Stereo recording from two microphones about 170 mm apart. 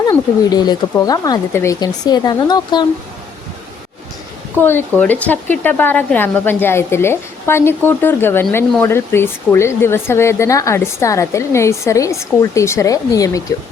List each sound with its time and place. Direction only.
0.1 s speech: 25° left (ahead or behind)
4.6 s speech: 10° left (ahead or behind)